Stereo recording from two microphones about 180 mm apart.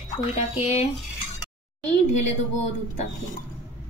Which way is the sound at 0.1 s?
40° left (ahead or behind).